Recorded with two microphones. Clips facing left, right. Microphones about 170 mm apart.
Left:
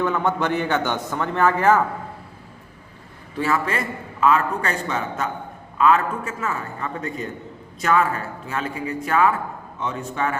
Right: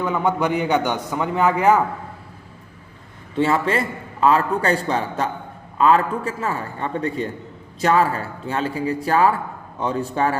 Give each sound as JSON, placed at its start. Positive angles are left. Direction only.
{"t": 0.0, "sound": "a man's voice", "side_deg": -10}
{"t": 3.3, "sound": "a man's voice", "side_deg": -25}